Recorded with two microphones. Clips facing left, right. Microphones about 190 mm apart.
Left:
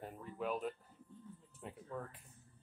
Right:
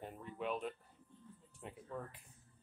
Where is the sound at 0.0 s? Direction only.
Centre (ahead or behind).